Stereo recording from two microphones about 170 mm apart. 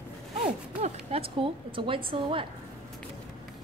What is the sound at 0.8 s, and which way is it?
A woman's voice, 35° right (ahead or behind).